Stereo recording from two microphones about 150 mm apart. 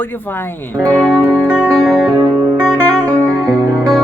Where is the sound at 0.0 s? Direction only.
15° left (ahead or behind).